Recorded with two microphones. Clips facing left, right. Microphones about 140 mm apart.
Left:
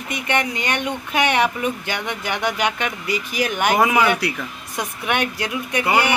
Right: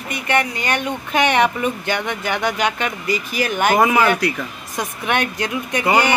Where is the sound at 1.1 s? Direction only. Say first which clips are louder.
Right 3 dB; 10° left (ahead or behind).